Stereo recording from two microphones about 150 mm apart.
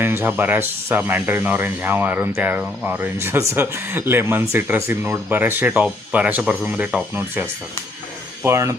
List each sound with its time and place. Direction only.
0.0 s speech: 15° right (ahead or behind)
8.4 s speech: 20° right (ahead or behind)